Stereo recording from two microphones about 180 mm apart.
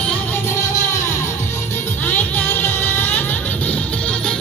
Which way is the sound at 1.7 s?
10° left (ahead or behind).